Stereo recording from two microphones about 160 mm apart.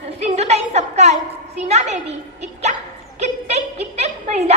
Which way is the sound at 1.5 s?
45° right (ahead or behind).